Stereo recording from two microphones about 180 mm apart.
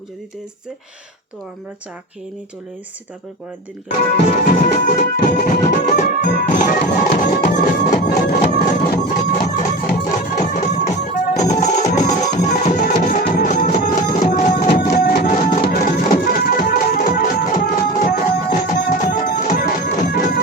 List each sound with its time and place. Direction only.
3.9 s music: 50° left (ahead or behind)
8.0 s music: 60° left (ahead or behind)
10.3 s music: 45° left (ahead or behind)